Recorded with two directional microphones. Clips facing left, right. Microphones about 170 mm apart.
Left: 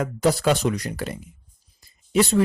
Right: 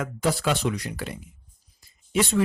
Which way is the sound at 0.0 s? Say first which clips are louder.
Left 5 dB; 40° left (ahead or behind).